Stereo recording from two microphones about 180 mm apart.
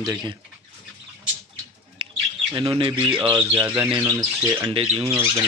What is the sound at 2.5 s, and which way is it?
Speech, 25° right (ahead or behind).